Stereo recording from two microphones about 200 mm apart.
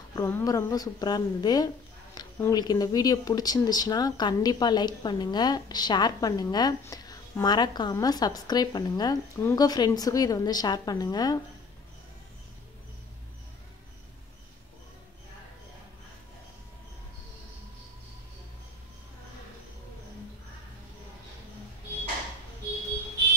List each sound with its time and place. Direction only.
0.1 s speech: 15° left (ahead or behind)